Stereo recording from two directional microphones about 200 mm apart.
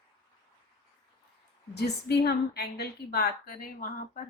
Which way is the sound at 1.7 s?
55° left (ahead or behind).